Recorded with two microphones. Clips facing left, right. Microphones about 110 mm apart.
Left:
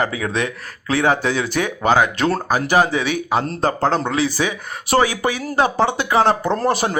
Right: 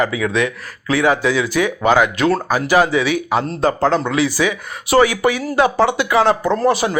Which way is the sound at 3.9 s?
40° left (ahead or behind).